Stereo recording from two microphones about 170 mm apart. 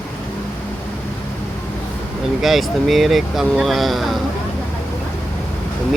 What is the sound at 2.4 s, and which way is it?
Speech, centre (ahead or behind).